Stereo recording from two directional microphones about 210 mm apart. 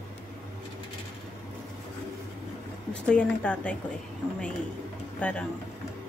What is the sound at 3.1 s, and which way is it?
Speech, 5° left (ahead or behind).